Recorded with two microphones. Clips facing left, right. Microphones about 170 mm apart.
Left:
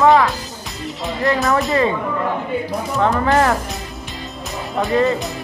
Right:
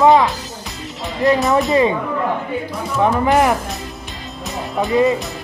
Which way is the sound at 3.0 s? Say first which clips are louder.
Right 2 dB; 15° right (ahead or behind).